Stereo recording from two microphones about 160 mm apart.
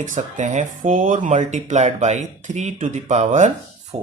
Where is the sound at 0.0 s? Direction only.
50° right (ahead or behind).